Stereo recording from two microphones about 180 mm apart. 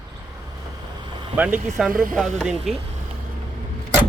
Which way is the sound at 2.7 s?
Centre (ahead or behind).